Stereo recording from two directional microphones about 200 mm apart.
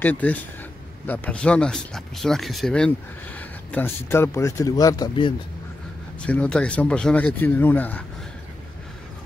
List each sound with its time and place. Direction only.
0.0 s speech: 10° left (ahead or behind)
6.2 s speech: 5° left (ahead or behind)